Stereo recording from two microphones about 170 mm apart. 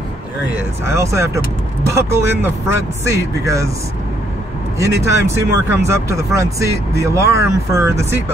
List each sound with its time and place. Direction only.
0.5 s speech: 15° right (ahead or behind)
4.7 s speech: 15° right (ahead or behind)